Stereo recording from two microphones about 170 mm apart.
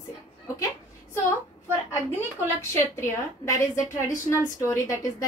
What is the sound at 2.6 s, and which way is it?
A woman's voice, 15° left (ahead or behind).